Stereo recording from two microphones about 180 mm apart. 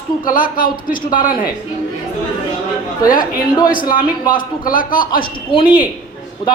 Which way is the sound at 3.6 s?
50° left (ahead or behind).